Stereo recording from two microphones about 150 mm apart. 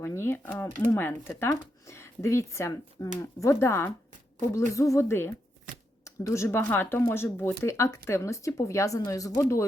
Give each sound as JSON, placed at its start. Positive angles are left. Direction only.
{"t": 0.0, "sound": "speech", "side_deg": 15}